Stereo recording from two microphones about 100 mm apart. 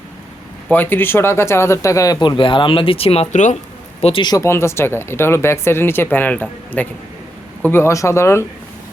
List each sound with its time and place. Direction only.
0.7 s speech: 20° left (ahead or behind); by 2.2 s 35° left (ahead or behind)
2.2 s speech: 55° left (ahead or behind); by 3.2 s 80° left
4.0 s speech: 90° left
4.4 s speech: 25° left (ahead or behind)